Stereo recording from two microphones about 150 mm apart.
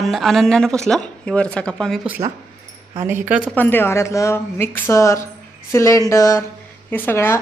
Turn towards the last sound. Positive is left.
turn(degrees=15)  # may be behind; listen again after turning